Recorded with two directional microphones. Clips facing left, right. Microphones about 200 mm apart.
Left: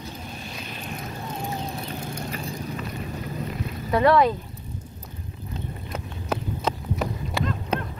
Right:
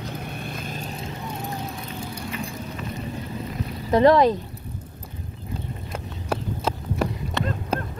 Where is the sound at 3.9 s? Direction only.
35° right (ahead or behind).